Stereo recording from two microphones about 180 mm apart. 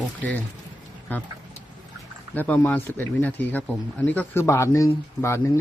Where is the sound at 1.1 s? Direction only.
10° left (ahead or behind).